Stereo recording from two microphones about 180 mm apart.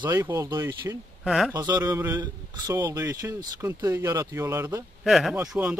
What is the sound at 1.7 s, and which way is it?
Speech, 20° right (ahead or behind).